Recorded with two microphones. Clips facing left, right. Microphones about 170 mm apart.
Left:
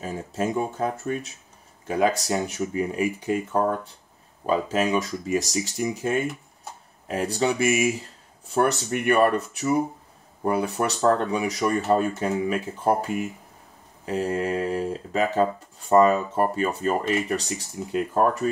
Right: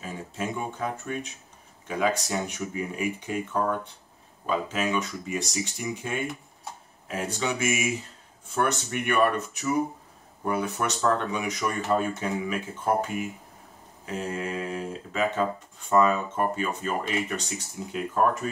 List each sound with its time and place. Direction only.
0.0 s speech: 40° left (ahead or behind)
18.1 s speech: 35° left (ahead or behind)